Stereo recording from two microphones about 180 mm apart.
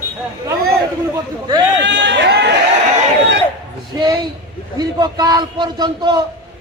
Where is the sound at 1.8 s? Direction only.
85° right; by 2.5 s 70° right (ahead or behind).